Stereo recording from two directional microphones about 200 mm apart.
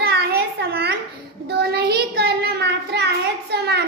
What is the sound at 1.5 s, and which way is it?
Child singing, 55° right (ahead or behind).